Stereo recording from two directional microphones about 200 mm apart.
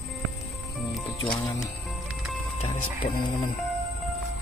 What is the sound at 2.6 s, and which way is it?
Music, 35° left (ahead or behind).